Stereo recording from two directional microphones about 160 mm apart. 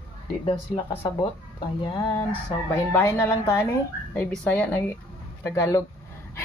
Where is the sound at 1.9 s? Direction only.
25° left (ahead or behind); by 4.8 s 10° left (ahead or behind).